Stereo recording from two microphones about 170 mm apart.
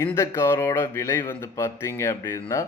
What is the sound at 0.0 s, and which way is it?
A man's voice, 15° left (ahead or behind).